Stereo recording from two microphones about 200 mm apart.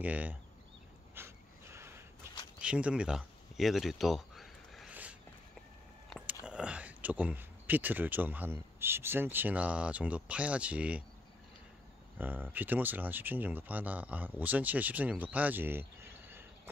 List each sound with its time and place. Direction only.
0.0 s speech: 5° right (ahead or behind)
1.1 s a sound: 10° right (ahead or behind)
8.7 s speech: 10° right (ahead or behind)
12.2 s speech: 10° right (ahead or behind)